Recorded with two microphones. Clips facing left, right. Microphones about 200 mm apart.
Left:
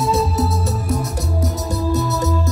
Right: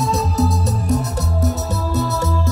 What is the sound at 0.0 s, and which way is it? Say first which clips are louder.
Music: left 1 dB; 5° left (ahead or behind).